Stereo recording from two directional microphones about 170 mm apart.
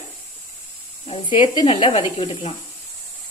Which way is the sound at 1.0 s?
30° left (ahead or behind).